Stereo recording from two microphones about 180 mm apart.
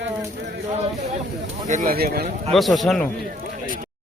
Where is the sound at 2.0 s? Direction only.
60° right (ahead or behind).